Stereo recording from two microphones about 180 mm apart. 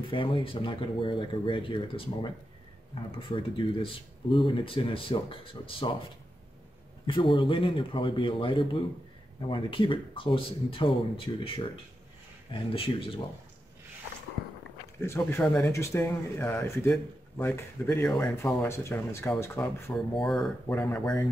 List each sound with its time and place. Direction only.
0.1 s speech: 30° left (ahead or behind)
7.1 s speech: 25° left (ahead or behind)
15.0 s speech: 15° left (ahead or behind)